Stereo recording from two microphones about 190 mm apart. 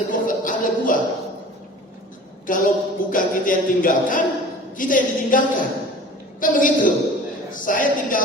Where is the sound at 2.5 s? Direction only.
45° left (ahead or behind).